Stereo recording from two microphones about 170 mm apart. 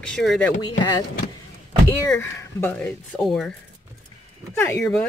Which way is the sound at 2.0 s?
15° left (ahead or behind).